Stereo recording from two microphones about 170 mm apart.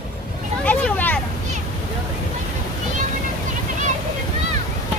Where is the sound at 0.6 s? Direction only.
10° left (ahead or behind).